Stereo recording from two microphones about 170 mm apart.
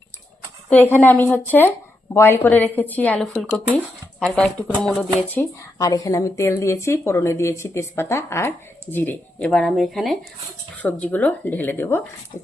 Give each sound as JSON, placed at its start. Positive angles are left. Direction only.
{"t": 0.7, "sound": "speech", "side_deg": 10}
{"t": 5.9, "sound": "speech", "side_deg": 20}